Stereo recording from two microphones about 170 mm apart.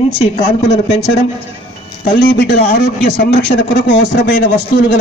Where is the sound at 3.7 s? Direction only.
90° left.